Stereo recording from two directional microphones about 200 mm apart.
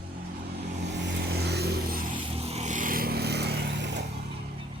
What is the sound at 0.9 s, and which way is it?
Vehicle, 60° right (ahead or behind).